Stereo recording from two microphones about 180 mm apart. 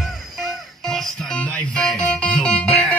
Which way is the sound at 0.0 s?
Centre (ahead or behind).